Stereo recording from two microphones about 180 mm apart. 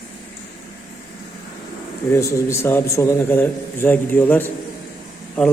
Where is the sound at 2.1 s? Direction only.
15° left (ahead or behind).